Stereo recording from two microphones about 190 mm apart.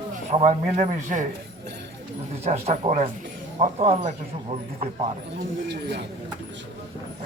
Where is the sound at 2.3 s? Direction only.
35° right (ahead or behind).